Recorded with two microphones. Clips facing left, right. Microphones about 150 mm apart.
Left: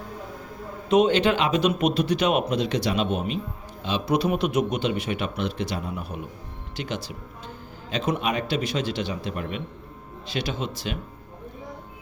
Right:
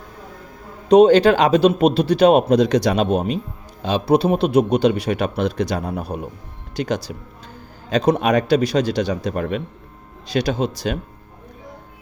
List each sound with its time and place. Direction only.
0.9 s speech: 35° right (ahead or behind)